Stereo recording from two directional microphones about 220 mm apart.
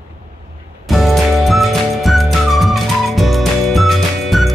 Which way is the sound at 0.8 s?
Centre (ahead or behind).